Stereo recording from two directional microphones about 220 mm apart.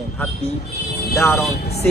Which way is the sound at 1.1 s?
10° left (ahead or behind).